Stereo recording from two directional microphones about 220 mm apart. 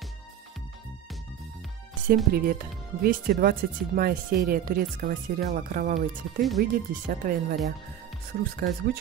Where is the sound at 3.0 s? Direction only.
40° right (ahead or behind).